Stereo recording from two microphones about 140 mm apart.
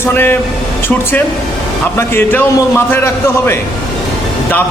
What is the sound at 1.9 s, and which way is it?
A man's voice, 15° left (ahead or behind).